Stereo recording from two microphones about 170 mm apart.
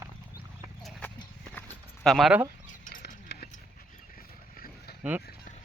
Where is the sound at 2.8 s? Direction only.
60° left (ahead or behind).